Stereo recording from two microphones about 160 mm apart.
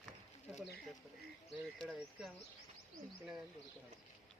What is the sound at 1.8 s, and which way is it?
Speech, centre (ahead or behind).